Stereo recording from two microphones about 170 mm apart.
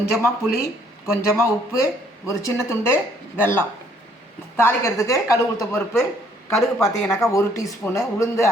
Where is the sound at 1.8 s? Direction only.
15° left (ahead or behind).